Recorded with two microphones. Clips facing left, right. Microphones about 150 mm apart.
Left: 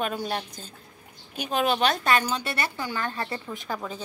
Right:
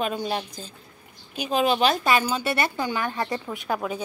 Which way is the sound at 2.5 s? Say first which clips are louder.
Right 4 dB; 20° right (ahead or behind).